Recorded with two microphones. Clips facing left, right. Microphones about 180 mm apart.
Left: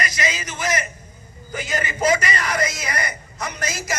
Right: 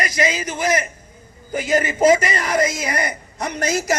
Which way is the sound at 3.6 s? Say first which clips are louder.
Right 9 dB; 35° right (ahead or behind).